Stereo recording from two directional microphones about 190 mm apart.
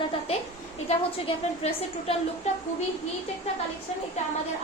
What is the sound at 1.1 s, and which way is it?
Speech, 30° left (ahead or behind).